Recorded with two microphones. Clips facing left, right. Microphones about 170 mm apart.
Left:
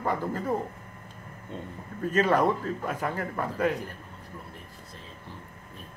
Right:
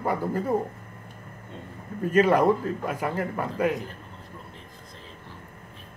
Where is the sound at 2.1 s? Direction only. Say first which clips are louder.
Right 4 dB; 10° right (ahead or behind).